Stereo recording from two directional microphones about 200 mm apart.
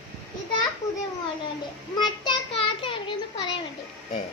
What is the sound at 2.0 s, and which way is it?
Child singing, 20° left (ahead or behind).